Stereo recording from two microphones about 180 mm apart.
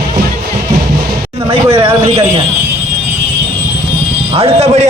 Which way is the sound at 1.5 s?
30° right (ahead or behind).